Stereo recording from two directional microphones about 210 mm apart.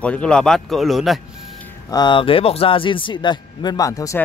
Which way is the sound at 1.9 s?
20° left (ahead or behind).